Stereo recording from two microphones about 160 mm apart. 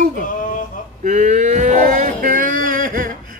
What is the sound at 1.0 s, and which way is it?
Speech, 50° right (ahead or behind).